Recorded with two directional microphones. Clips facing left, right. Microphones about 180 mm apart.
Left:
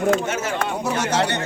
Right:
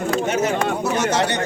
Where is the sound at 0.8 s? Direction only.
10° left (ahead or behind).